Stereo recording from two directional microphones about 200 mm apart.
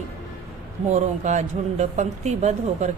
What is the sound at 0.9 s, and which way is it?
A woman's voice, 35° right (ahead or behind).